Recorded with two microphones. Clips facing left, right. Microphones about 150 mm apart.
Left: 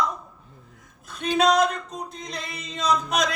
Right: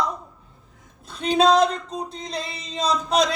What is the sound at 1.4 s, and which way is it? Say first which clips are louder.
Speech: right 3 dB; 30° right (ahead or behind).